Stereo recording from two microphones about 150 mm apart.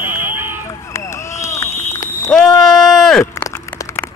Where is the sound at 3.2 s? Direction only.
20° left (ahead or behind).